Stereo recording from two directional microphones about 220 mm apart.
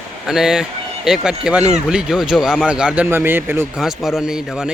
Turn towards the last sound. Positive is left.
turn(degrees=0)  # may be behind; listen again after turning